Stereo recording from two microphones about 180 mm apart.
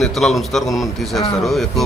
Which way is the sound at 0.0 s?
Centre (ahead or behind).